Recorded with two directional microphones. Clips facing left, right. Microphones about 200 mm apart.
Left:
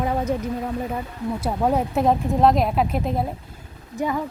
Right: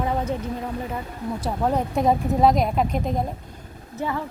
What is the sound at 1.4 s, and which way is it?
A woman's voice, 10° left (ahead or behind).